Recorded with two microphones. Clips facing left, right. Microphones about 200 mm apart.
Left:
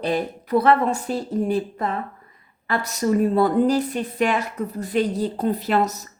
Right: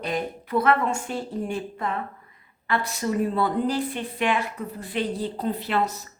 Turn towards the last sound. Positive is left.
turn(degrees=40)  # may be behind; listen again after turning